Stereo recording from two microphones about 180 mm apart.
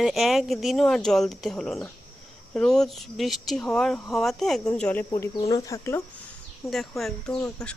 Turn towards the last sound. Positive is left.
turn(degrees=5)  # may be behind; listen again after turning